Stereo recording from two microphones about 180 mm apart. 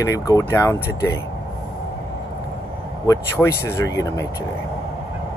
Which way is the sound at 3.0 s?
20° left (ahead or behind).